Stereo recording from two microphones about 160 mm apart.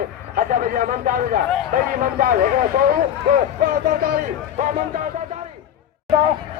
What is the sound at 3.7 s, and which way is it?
Speech, 65° right (ahead or behind).